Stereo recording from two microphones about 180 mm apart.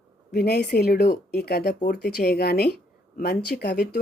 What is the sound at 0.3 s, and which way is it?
Speech, 60° left (ahead or behind).